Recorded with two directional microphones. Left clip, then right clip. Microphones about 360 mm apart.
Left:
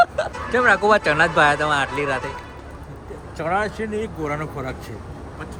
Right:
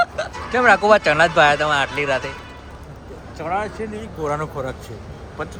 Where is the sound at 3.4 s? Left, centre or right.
Left.